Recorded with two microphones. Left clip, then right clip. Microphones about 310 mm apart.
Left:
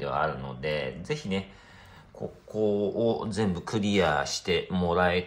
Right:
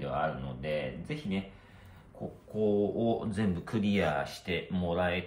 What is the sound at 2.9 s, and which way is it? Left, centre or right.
Speech, centre.